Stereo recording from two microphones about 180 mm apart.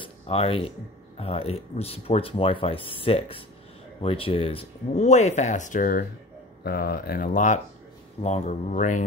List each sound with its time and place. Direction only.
0.0 s speech: 30° left (ahead or behind); by 6.0 s 50° left (ahead or behind)
6.6 s speech: 60° left (ahead or behind); by 9.0 s 45° left (ahead or behind)